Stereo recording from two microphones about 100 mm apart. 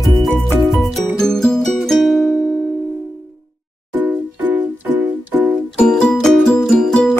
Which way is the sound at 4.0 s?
15° right (ahead or behind).